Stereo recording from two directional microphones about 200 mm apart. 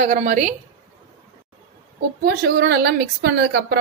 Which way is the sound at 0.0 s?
40° right (ahead or behind).